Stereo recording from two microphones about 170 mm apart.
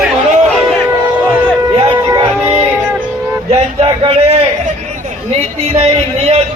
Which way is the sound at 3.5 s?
35° right (ahead or behind).